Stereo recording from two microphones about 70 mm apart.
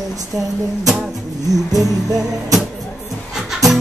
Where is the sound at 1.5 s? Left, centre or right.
Right.